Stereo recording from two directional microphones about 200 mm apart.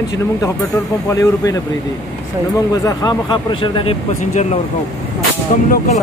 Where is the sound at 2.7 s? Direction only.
15° left (ahead or behind).